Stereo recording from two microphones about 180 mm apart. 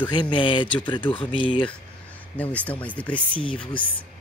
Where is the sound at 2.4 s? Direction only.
10° left (ahead or behind).